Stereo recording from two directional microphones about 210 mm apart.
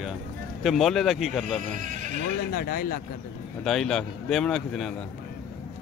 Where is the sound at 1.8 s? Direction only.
35° right (ahead or behind).